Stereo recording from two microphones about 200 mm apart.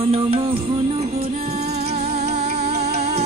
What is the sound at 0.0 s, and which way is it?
Music, 30° right (ahead or behind).